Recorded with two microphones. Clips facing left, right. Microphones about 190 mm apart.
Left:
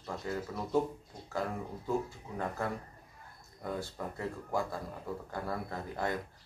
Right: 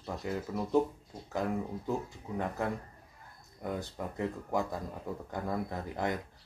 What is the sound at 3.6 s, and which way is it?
Speech, 20° right (ahead or behind).